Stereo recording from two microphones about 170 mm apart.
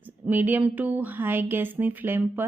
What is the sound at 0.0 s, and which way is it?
Speech, 10° right (ahead or behind).